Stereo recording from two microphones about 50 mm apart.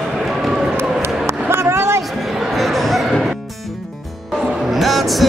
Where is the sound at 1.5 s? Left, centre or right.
Right.